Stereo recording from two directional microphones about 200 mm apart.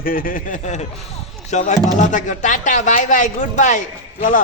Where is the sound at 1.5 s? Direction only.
35° left (ahead or behind).